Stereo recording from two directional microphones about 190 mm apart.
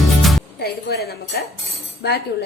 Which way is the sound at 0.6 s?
55° left (ahead or behind).